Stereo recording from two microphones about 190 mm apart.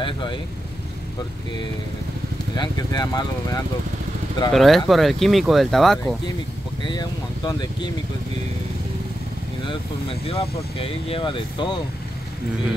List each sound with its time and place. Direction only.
0.0 s speech: 25° left (ahead or behind)
2.5 s speech: 20° left (ahead or behind)
4.5 s speech: centre (ahead or behind)
6.9 s speech: 20° left (ahead or behind)
9.7 s speech: 30° left (ahead or behind)